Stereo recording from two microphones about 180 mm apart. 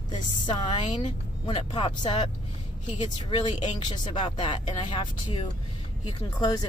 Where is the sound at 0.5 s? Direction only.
25° left (ahead or behind).